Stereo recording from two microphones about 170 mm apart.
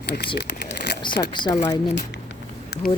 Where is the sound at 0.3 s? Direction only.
75° left (ahead or behind).